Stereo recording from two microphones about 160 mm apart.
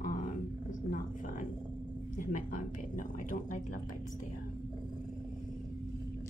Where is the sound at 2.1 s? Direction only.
55° left (ahead or behind).